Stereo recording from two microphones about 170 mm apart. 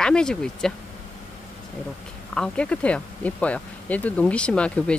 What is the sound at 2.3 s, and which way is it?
Speech, 5° left (ahead or behind).